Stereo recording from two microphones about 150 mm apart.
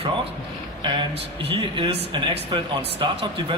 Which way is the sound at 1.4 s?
35° right (ahead or behind).